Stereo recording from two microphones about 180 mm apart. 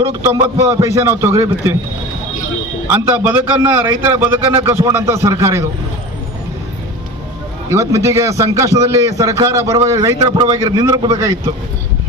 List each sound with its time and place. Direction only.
0.4 s a man's voice: 15° right (ahead or behind)
2.8 s a man's voice: 10° right (ahead or behind)
7.7 s a man's voice: 15° right (ahead or behind)